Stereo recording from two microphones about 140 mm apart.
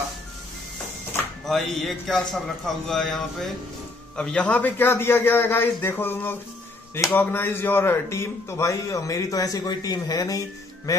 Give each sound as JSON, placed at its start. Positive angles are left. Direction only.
{"t": 1.4, "sound": "a man's voice", "side_deg": 0}